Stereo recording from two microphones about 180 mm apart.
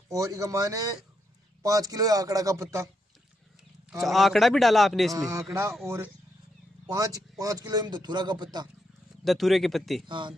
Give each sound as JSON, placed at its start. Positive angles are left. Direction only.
{"t": 0.1, "sound": "a man's voice", "side_deg": -20}
{"t": 4.0, "sound": "a man's voice", "side_deg": 0}
{"t": 5.1, "sound": "speech", "side_deg": -15}
{"t": 6.9, "sound": "a man's voice", "side_deg": -20}
{"t": 9.2, "sound": "a man's voice", "side_deg": 0}
{"t": 10.0, "sound": "a man's voice", "side_deg": -25}